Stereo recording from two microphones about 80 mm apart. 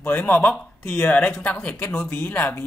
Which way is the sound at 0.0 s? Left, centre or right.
Left.